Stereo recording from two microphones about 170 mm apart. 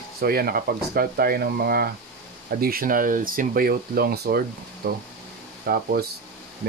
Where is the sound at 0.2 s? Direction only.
60° right (ahead or behind).